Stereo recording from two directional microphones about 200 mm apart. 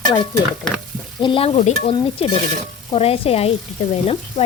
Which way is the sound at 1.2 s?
25° left (ahead or behind).